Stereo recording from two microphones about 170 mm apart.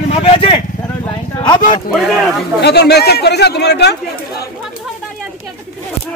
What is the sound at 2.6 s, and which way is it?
Speech, 75° left (ahead or behind).